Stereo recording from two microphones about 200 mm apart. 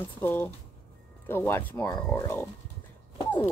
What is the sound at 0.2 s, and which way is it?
Speech, 10° left (ahead or behind).